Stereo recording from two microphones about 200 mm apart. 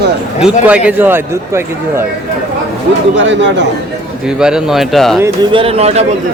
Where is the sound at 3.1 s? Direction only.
65° right (ahead or behind).